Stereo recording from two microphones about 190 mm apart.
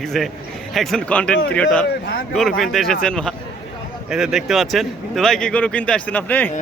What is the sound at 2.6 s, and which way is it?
Speech, centre (ahead or behind).